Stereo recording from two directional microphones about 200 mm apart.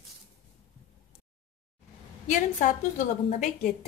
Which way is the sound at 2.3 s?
40° left (ahead or behind).